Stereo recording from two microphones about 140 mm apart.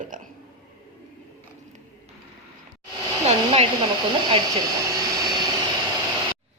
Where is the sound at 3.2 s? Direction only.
45° right (ahead or behind).